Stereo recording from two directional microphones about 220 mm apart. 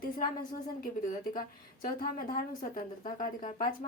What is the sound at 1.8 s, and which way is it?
A woman's voice, 40° left (ahead or behind).